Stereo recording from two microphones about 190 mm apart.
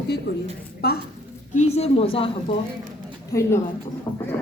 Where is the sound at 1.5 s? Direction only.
35° left (ahead or behind).